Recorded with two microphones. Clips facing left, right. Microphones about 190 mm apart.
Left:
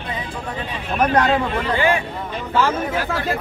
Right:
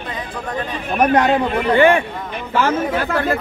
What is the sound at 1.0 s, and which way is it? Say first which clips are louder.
Speech: right 3 dB; 20° right (ahead or behind).